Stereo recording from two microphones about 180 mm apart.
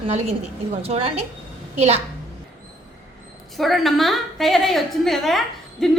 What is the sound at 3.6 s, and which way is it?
A woman's voice, centre (ahead or behind).